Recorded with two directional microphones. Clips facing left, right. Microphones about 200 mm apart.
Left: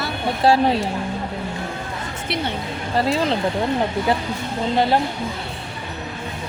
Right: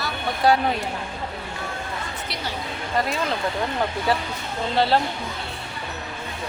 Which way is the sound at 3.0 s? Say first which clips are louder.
Left 6 dB; 30° left (ahead or behind).